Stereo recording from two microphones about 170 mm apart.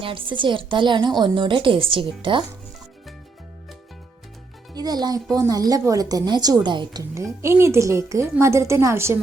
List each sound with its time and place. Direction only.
0.0 s speech: 30° right (ahead or behind)
4.7 s speech: 25° right (ahead or behind)